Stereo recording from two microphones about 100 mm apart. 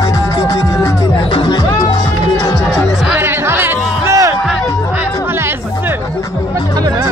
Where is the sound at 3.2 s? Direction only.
20° right (ahead or behind).